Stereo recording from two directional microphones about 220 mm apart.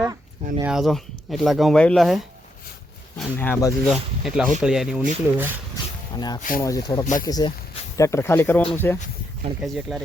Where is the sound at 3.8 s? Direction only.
Centre (ahead or behind).